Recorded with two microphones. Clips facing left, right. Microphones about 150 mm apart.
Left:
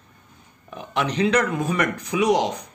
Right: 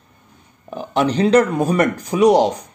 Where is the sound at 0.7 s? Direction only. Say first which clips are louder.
Right 7 dB; 35° right (ahead or behind).